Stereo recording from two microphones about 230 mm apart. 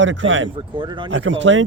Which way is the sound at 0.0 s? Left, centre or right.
Right.